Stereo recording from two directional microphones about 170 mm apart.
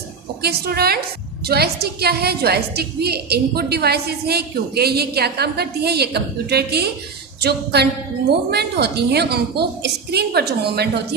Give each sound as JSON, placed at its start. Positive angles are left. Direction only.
{"t": 0.4, "sound": "a woman's voice", "side_deg": -70}